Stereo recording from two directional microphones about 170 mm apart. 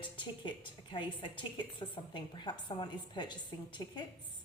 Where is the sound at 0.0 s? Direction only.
30° left (ahead or behind).